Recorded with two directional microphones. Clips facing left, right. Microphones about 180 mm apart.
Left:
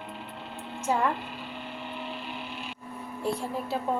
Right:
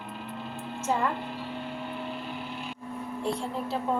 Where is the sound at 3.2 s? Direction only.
5° left (ahead or behind).